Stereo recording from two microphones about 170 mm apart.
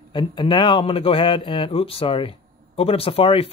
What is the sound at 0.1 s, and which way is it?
Speech, 30° left (ahead or behind).